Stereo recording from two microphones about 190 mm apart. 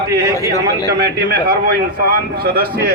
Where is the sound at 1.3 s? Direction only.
50° right (ahead or behind).